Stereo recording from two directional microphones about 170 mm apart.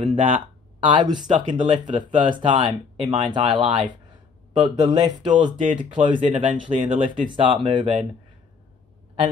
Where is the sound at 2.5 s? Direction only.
30° right (ahead or behind).